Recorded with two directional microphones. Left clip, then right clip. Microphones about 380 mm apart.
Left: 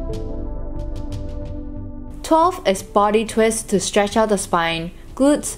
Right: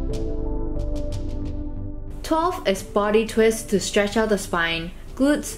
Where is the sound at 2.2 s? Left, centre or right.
Centre.